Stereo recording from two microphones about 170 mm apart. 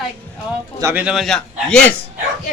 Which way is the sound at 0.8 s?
15° right (ahead or behind).